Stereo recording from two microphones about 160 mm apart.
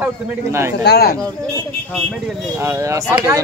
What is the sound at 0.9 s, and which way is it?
Speech, 85° left.